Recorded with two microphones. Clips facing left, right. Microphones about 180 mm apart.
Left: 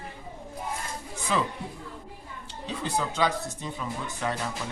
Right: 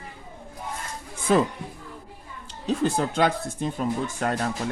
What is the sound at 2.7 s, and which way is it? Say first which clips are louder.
Speech: right 7 dB; 50° right (ahead or behind).